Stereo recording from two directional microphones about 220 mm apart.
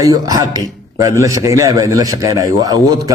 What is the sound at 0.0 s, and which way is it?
A man's voice, 15° right (ahead or behind).